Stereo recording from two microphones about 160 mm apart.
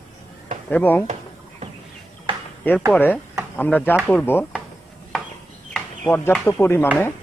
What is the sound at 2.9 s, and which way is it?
A man's voice, 10° left (ahead or behind).